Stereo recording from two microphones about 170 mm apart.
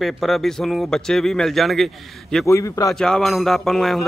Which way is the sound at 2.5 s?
20° left (ahead or behind).